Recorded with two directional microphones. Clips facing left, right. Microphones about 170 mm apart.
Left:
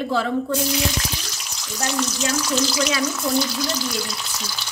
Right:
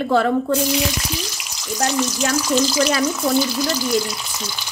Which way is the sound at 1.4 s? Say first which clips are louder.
Right 5 dB; 5° right (ahead or behind).